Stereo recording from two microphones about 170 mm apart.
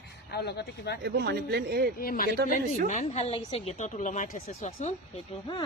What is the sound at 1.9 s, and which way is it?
Speech, 60° left (ahead or behind).